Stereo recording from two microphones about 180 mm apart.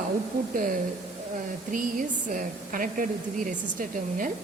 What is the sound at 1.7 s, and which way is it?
A woman's voice, 50° right (ahead or behind).